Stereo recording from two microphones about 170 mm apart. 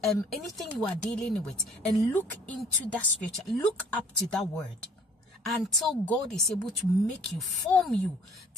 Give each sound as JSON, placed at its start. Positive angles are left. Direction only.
{"t": 0.0, "sound": "speech", "side_deg": 0}